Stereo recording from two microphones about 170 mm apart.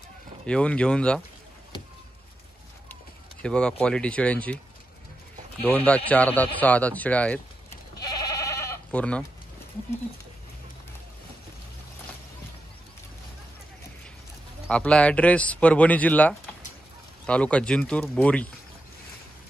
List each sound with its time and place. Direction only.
0.5 s speech: 5° left (ahead or behind)
3.4 s a man's voice: 5° left (ahead or behind)
5.6 s a man's voice: 10° left (ahead or behind)
8.0 s goat: 20° left (ahead or behind)
14.7 s a man's voice: 5° left (ahead or behind)